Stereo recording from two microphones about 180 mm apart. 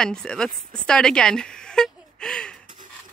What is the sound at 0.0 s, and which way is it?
A woman's voice, 5° left (ahead or behind).